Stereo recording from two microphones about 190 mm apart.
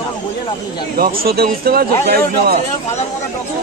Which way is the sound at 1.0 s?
50° right (ahead or behind).